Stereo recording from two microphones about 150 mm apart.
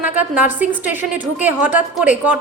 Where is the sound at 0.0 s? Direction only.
10° right (ahead or behind).